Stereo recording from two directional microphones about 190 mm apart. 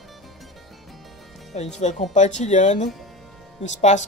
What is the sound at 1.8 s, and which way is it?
Speech, 35° left (ahead or behind).